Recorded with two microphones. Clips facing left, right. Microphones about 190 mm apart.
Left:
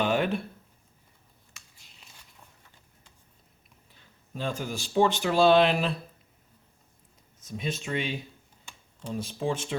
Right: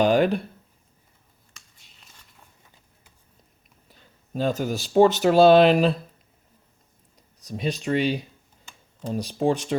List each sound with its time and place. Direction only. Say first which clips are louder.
0.0 s speech: right 7 dB; 35° right (ahead or behind)
1.8 s a sound: even; centre (ahead or behind)
4.4 s speech: right 8 dB; 40° right (ahead or behind)
7.4 s speech: right 6 dB; 40° right (ahead or behind)